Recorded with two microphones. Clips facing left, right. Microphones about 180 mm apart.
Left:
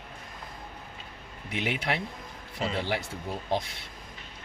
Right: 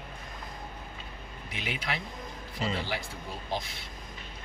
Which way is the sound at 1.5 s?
65° left (ahead or behind).